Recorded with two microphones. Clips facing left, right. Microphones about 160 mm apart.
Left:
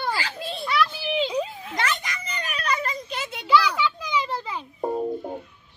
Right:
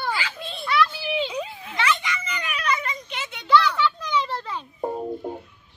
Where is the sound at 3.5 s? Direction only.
10° left (ahead or behind).